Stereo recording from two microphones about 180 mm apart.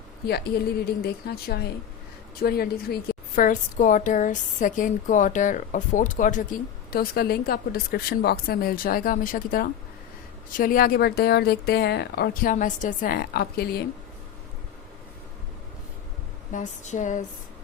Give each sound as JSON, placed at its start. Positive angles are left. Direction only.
{"t": 1.0, "sound": "a woman's voice", "side_deg": 60}
{"t": 16.5, "sound": "a woman's voice", "side_deg": 45}